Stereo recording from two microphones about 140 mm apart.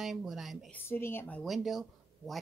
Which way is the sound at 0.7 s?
15° left (ahead or behind).